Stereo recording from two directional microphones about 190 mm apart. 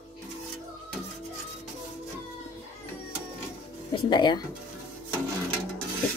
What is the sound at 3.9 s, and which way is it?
Speech, 25° left (ahead or behind).